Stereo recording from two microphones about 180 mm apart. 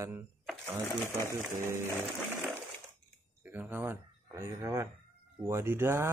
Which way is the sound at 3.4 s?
10° right (ahead or behind).